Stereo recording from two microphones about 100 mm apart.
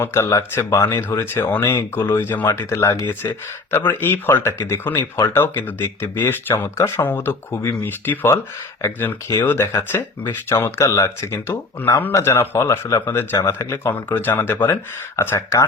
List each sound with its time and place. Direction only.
0.0 s speech: 25° left (ahead or behind)